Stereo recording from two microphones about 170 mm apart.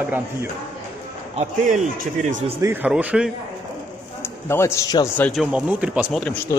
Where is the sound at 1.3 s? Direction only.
40° right (ahead or behind).